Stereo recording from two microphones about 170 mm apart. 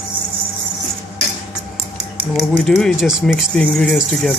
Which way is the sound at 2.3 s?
Centre (ahead or behind).